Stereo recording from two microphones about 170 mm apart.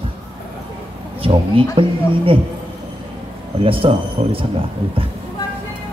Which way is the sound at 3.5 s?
35° right (ahead or behind).